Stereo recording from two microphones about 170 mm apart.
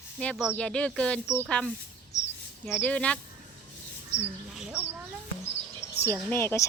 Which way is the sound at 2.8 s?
5° left (ahead or behind).